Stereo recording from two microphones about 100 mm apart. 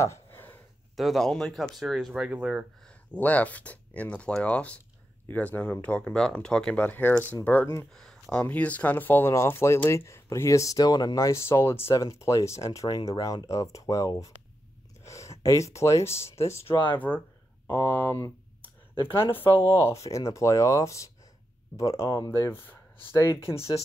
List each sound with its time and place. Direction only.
0.0 s a sound: 25° left (ahead or behind)
0.9 s speech: centre (ahead or behind)
2.8 s speech: 15° left (ahead or behind)
7.9 s speech: 5° left (ahead or behind); by 12.8 s 30° left (ahead or behind)
12.8 s speech: 40° left (ahead or behind)
15.0 s a sound: 30° left (ahead or behind)
15.4 s speech: 30° left (ahead or behind)
19.4 s speech: 40° left (ahead or behind)